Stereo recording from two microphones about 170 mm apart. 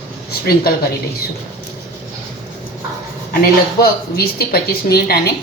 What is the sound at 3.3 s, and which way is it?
Speech, 60° left (ahead or behind).